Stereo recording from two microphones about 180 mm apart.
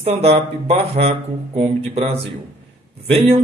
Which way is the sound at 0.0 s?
35° right (ahead or behind).